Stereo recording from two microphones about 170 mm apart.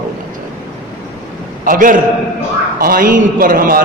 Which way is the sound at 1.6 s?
55° right (ahead or behind).